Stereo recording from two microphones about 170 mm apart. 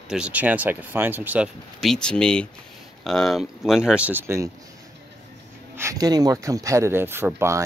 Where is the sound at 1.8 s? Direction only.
5° left (ahead or behind); by 4.5 s 15° right (ahead or behind).